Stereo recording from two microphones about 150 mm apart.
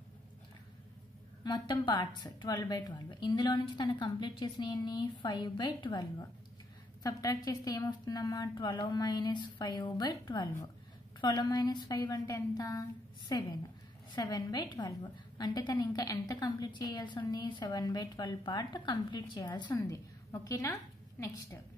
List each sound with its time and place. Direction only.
1.4 s a woman's voice: 30° left (ahead or behind)